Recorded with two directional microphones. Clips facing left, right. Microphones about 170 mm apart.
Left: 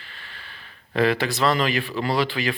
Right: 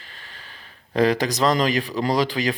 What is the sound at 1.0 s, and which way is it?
Speech, 40° right (ahead or behind).